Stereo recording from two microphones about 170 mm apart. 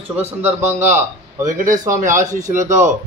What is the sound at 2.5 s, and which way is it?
Speech, 45° right (ahead or behind).